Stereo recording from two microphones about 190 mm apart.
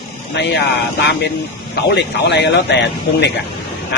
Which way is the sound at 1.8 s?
65° left (ahead or behind).